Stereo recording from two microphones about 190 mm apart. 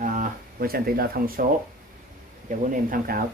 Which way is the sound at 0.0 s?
45° right (ahead or behind).